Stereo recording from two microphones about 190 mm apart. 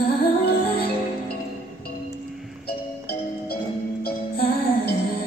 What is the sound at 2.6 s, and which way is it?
Music, 60° left (ahead or behind).